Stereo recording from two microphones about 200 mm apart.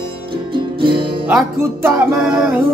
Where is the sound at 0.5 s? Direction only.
25° right (ahead or behind).